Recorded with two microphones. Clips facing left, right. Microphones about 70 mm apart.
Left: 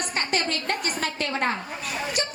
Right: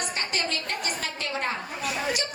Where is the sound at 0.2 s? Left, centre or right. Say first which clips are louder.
Left 6 dB; left.